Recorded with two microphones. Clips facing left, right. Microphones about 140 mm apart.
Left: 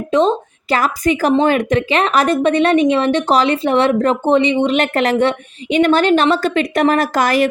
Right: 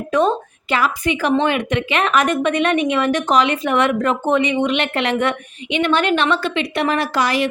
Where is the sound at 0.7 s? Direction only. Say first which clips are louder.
Left 3 dB; 40° left (ahead or behind).